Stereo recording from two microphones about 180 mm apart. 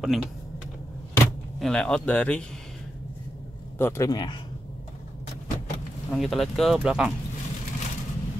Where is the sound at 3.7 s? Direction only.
15° left (ahead or behind).